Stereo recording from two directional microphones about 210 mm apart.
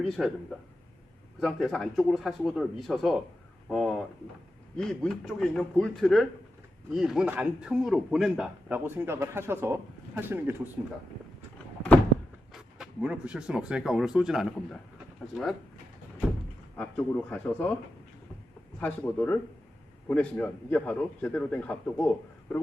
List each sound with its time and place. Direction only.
0.2 s speech: centre (ahead or behind)
1.4 s a man's voice: centre (ahead or behind)
12.5 s speech: 5° right (ahead or behind)
16.7 s a man's voice: 5° left (ahead or behind)
18.8 s a man's voice: 5° left (ahead or behind)